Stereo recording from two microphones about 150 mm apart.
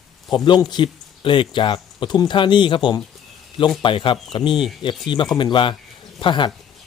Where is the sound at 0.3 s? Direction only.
30° left (ahead or behind).